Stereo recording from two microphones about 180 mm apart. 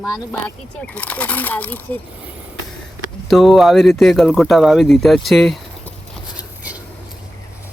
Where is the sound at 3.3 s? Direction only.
Centre (ahead or behind).